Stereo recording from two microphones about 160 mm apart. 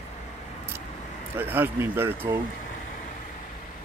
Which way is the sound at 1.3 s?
15° right (ahead or behind).